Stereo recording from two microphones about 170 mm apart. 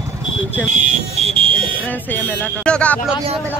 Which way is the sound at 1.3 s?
35° right (ahead or behind).